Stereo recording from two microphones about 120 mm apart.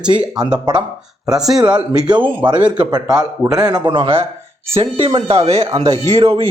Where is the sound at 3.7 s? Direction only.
45° right (ahead or behind).